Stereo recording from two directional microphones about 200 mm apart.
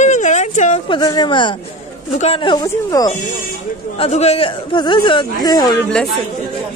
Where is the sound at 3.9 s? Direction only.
30° left (ahead or behind).